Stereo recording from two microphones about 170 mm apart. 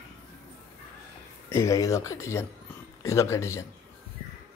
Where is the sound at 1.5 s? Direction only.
15° left (ahead or behind).